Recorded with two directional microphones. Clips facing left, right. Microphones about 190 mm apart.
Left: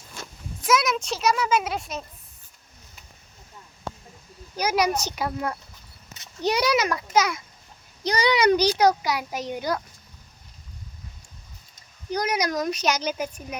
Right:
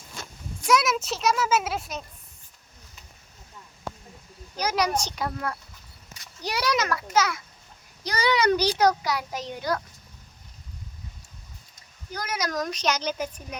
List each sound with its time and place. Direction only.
0.7 s speech: centre (ahead or behind)
4.5 s a child's voice: 10° left (ahead or behind)
6.1 s a child's voice: 20° left (ahead or behind)
12.1 s a child's voice: 15° left (ahead or behind)